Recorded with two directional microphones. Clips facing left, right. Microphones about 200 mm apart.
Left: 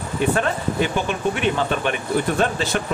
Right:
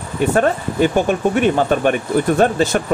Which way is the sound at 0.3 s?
45° right (ahead or behind).